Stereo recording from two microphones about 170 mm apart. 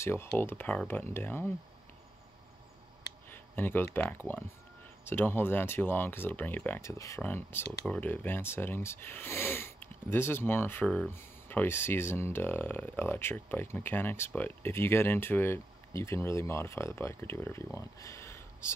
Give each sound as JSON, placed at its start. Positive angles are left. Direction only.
{"t": 0.0, "sound": "speech", "side_deg": 15}
{"t": 3.3, "sound": "speech", "side_deg": 10}